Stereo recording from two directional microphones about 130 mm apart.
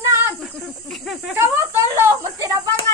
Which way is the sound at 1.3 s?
20° right (ahead or behind).